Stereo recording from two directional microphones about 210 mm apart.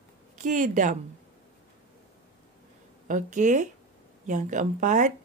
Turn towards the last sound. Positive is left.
turn(degrees=-35)  # may be behind; listen again after turning